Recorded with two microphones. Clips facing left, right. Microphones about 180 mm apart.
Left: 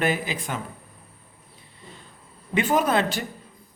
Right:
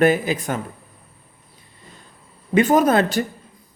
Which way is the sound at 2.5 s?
45° right (ahead or behind).